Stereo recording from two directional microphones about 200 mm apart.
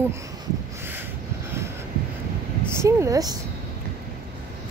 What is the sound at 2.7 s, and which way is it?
Speech, 15° right (ahead or behind).